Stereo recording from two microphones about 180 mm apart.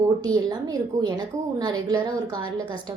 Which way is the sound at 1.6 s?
20° right (ahead or behind).